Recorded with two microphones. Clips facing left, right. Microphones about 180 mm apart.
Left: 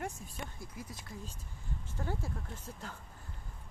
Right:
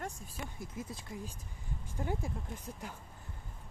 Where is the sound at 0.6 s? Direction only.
25° right (ahead or behind).